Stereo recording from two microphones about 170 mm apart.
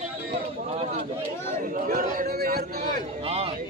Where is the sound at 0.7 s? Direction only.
40° right (ahead or behind).